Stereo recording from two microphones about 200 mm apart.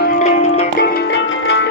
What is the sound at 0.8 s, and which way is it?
Music, 60° left (ahead or behind).